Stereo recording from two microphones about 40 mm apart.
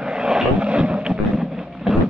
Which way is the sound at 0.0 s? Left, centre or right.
Centre.